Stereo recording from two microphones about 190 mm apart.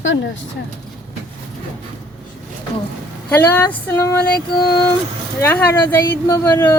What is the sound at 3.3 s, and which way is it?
Speech, 10° left (ahead or behind).